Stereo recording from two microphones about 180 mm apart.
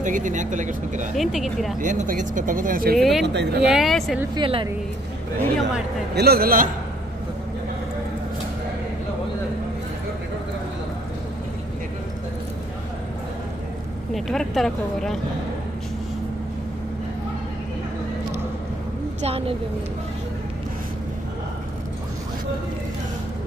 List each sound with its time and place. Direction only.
0.0 s speech: 45° right (ahead or behind)
1.1 s speech: centre (ahead or behind)
1.8 s speech: 45° right (ahead or behind)
3.0 s speech: centre (ahead or behind)
3.3 s a man's voice: 65° right (ahead or behind)
3.6 s speech: centre (ahead or behind)
4.4 s speech: 30° right (ahead or behind)
6.1 s a man's voice: 60° right (ahead or behind)
14.1 s speech: centre (ahead or behind)
19.2 s a woman's voice: 30° right (ahead or behind)